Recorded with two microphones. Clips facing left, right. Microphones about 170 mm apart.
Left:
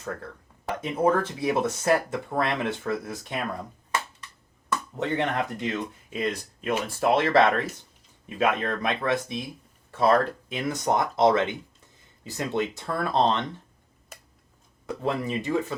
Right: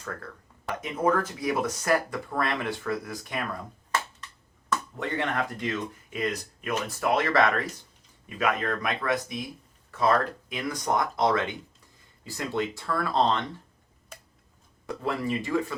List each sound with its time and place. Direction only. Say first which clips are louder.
0.8 s speech: left 2 dB; 30° left (ahead or behind)
4.9 s speech: left 4 dB; 20° left (ahead or behind)
14.8 s speech: left 1 dB; 20° left (ahead or behind)